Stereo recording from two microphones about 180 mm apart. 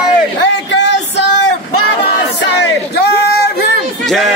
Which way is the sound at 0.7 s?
75° left (ahead or behind).